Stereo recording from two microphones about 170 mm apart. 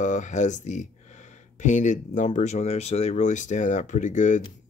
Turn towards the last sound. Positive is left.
turn(degrees=45)  # may be behind; listen again after turning